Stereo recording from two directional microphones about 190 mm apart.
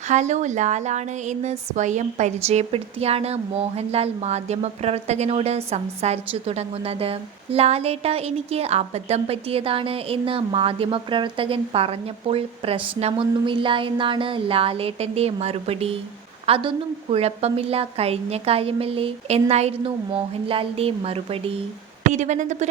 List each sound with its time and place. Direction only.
0.1 s speech: 40° right (ahead or behind)